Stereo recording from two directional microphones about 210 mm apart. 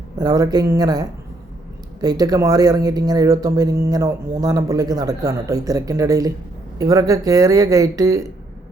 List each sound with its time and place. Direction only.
0.2 s speech: 20° right (ahead or behind)